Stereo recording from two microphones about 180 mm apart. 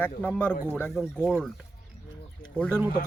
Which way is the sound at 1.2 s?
10° right (ahead or behind).